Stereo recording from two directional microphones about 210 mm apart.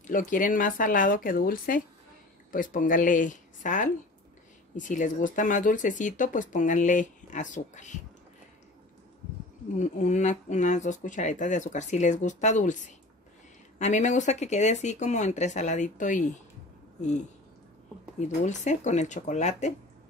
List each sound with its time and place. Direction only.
0.0 s speech: 40° left (ahead or behind)
9.8 s speech: 35° left (ahead or behind)
18.4 s speech: 35° left (ahead or behind)